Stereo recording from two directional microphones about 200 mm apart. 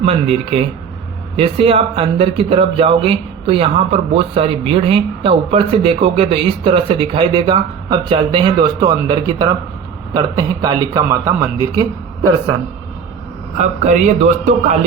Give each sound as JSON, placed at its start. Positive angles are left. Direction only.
{"t": 0.0, "sound": "a man's voice", "side_deg": -30}
{"t": 13.6, "sound": "a man's voice", "side_deg": -35}